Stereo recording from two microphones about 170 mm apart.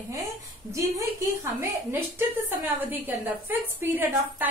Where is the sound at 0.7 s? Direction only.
15° right (ahead or behind).